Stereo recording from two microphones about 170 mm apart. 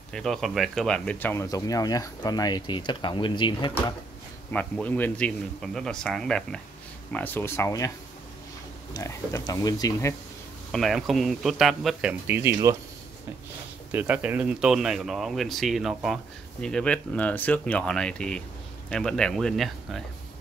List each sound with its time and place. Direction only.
0.1 s speech: centre (ahead or behind); by 3.7 s 30° left (ahead or behind)
4.5 s speech: 10° left (ahead or behind)
8.9 s speech: 20° left (ahead or behind)
10.7 s speech: centre (ahead or behind)
13.9 s speech: 10° right (ahead or behind)